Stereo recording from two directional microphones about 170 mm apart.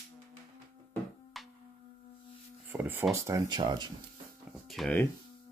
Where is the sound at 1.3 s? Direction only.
Centre (ahead or behind).